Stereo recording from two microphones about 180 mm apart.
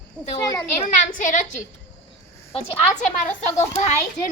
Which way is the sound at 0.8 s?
45° left (ahead or behind).